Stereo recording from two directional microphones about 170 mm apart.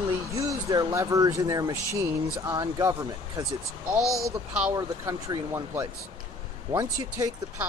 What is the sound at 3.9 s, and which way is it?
Speech, centre (ahead or behind).